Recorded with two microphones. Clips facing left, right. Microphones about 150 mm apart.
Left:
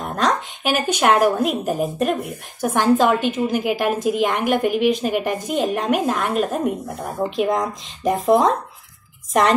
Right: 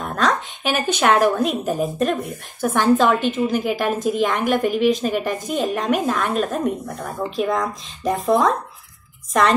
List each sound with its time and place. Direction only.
0.0 s a woman's voice: 15° left (ahead or behind)